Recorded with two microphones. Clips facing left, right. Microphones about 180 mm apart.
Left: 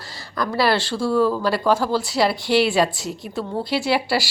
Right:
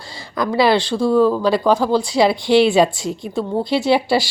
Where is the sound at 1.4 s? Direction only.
5° left (ahead or behind).